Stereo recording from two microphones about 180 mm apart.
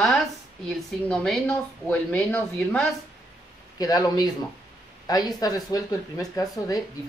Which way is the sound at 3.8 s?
20° left (ahead or behind).